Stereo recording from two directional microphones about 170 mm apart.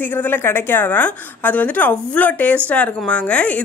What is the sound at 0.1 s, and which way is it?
Speech, 10° left (ahead or behind).